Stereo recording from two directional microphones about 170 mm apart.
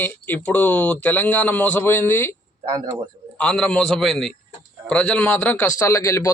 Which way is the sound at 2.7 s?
20° right (ahead or behind).